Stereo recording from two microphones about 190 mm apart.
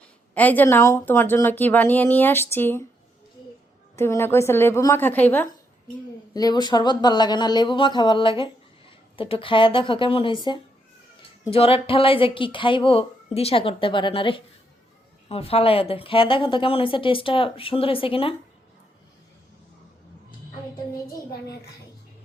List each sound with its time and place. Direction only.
0.3 s a woman's voice: 10° left (ahead or behind)
3.9 s a woman's voice: 15° left (ahead or behind)
6.3 s speech: 20° left (ahead or behind)